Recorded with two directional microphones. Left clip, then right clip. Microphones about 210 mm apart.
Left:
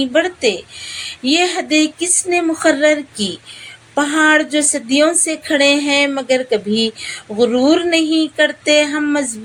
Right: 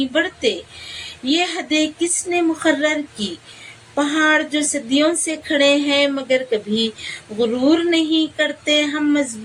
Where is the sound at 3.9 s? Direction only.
40° left (ahead or behind).